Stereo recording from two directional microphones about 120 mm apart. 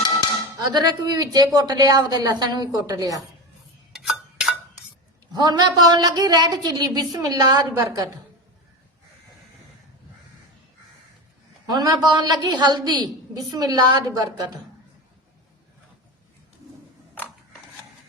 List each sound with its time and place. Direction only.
0.7 s a woman's voice: 35° right (ahead or behind)
3.9 s a sound: 5° right (ahead or behind)
5.3 s a woman's voice: 35° right (ahead or behind)
11.7 s a woman's voice: 35° right (ahead or behind)